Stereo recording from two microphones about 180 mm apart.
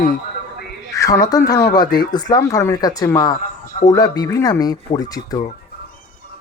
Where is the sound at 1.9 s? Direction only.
20° left (ahead or behind).